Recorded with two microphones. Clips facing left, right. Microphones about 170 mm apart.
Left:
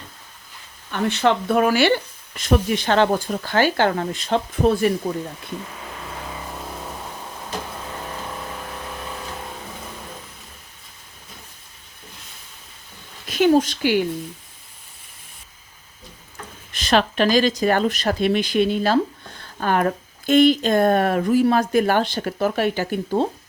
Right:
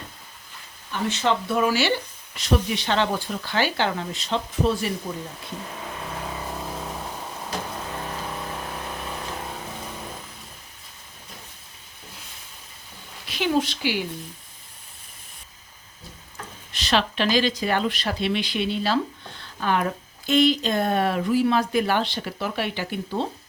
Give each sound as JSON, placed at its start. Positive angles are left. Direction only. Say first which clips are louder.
{"t": 0.9, "sound": "speech", "louder": "left 4 dB", "side_deg": 60}
{"t": 13.2, "sound": "a sound", "louder": "left 7 dB", "side_deg": 45}
{"t": 16.7, "sound": "speech", "louder": "left 5 dB", "side_deg": 50}